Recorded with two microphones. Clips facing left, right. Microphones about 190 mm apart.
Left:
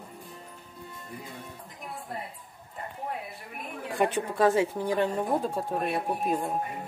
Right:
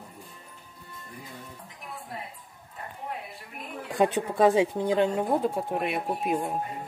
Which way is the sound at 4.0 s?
20° right (ahead or behind).